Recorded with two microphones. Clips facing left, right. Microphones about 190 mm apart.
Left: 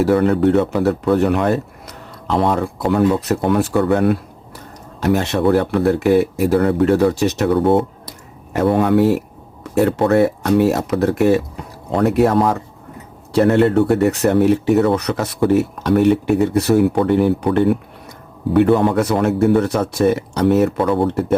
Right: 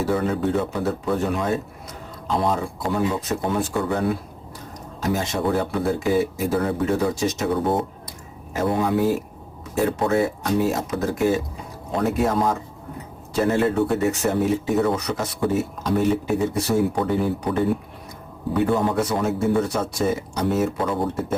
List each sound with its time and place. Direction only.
0.0 s speech: 65° left (ahead or behind)